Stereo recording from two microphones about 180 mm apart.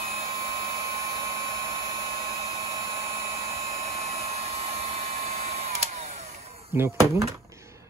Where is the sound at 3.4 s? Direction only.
15° right (ahead or behind).